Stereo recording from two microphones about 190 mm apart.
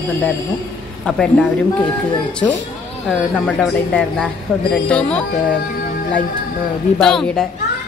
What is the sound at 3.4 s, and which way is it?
Speech, 5° left (ahead or behind).